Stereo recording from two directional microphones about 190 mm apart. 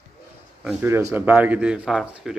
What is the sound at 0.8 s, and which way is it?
Speech, 15° right (ahead or behind).